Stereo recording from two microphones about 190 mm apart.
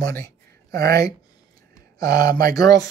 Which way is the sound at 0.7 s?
55° right (ahead or behind).